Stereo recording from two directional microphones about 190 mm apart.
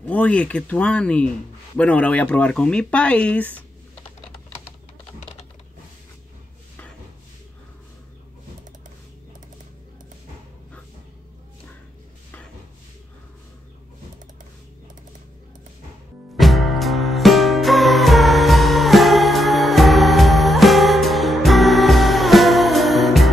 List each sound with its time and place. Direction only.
0.0 s speech: 5° left (ahead or behind)
16.3 s music: centre (ahead or behind)